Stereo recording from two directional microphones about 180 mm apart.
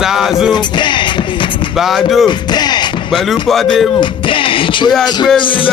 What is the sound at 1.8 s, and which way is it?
Speech, centre (ahead or behind).